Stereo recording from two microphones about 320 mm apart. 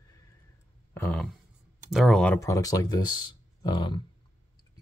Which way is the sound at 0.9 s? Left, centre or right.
Centre.